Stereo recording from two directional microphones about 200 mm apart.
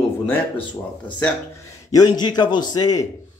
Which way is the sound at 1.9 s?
20° left (ahead or behind).